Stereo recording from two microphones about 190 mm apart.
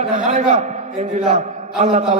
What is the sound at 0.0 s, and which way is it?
A man's voice, 40° right (ahead or behind).